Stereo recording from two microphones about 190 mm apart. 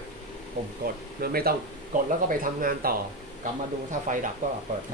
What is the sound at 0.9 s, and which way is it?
Speech, 55° right (ahead or behind).